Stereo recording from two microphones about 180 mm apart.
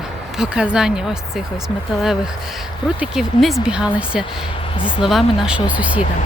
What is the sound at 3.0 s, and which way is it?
Speech, centre (ahead or behind).